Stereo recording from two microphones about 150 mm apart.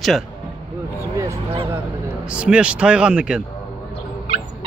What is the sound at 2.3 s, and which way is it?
Speech, 5° right (ahead or behind).